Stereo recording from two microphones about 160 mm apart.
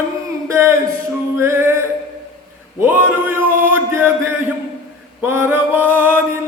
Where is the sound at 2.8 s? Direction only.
15° right (ahead or behind).